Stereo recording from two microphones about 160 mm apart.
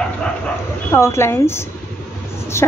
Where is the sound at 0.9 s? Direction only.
15° left (ahead or behind).